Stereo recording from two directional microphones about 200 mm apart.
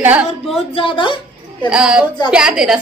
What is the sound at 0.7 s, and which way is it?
Speech, 25° left (ahead or behind).